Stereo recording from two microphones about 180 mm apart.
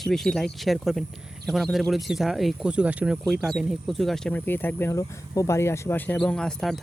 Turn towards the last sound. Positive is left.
turn(degrees=0)  # may be behind; listen again after turning